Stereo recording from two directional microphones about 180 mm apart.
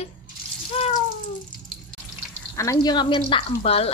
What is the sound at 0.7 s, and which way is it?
Cat, 35° left (ahead or behind).